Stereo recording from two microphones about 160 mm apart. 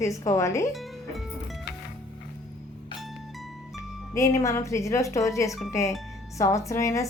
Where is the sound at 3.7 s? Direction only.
20° left (ahead or behind).